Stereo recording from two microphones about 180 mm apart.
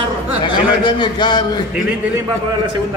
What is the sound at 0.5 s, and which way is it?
Speech, 25° left (ahead or behind).